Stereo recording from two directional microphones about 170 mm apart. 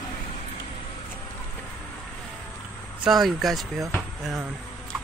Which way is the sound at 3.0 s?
Centre (ahead or behind).